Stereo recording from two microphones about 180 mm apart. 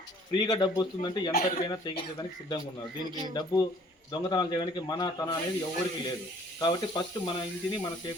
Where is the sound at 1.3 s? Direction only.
55° left (ahead or behind).